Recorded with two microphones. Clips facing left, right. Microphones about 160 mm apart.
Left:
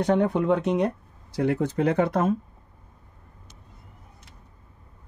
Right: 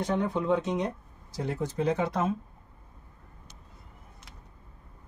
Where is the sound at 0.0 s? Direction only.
70° left (ahead or behind).